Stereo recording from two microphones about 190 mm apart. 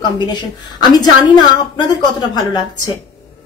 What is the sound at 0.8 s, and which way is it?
A woman's voice, 20° left (ahead or behind).